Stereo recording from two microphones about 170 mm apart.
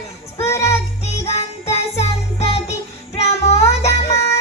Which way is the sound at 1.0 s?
40° left (ahead or behind).